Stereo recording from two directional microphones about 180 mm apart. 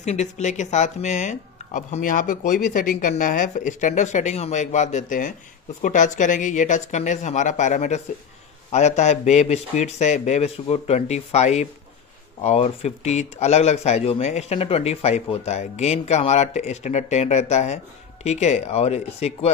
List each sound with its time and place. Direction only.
0.0 s speech: 40° left (ahead or behind)